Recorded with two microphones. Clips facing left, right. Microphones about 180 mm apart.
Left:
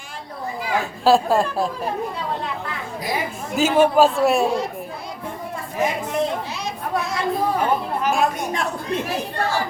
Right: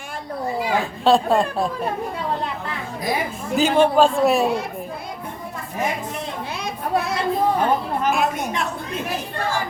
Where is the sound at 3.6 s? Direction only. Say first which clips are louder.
Even; 5° left (ahead or behind).